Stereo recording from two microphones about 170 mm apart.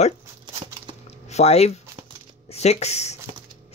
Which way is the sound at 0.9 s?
40° left (ahead or behind).